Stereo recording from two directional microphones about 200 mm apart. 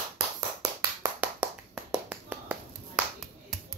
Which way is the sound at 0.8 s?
10° right (ahead or behind).